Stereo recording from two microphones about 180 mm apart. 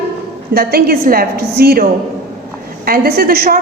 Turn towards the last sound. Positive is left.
turn(degrees=-55)  # may be behind; listen again after turning